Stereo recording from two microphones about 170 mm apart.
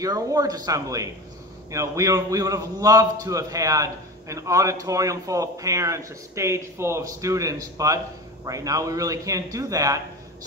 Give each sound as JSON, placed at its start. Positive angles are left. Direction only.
{"t": 0.0, "sound": "a man's voice", "side_deg": -20}